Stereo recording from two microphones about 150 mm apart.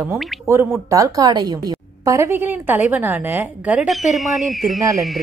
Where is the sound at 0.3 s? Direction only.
Centre (ahead or behind).